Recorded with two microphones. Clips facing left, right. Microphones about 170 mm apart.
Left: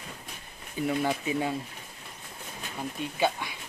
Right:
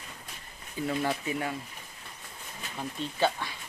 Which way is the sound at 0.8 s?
20° left (ahead or behind).